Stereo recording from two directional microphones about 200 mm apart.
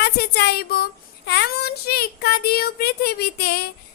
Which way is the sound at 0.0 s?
55° left (ahead or behind).